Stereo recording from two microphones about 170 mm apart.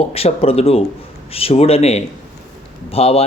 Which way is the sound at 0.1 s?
35° left (ahead or behind).